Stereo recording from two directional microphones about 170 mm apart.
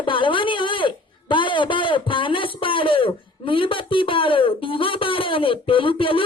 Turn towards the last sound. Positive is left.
turn(degrees=30)  # may be behind; listen again after turning